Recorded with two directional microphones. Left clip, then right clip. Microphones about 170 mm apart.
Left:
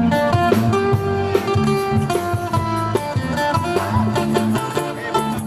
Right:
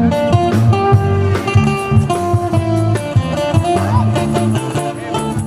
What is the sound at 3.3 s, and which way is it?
Music, 15° right (ahead or behind).